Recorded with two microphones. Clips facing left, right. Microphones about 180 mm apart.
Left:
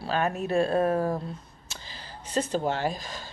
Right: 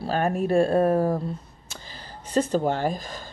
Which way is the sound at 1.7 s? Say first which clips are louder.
Right 2 dB; 50° right (ahead or behind).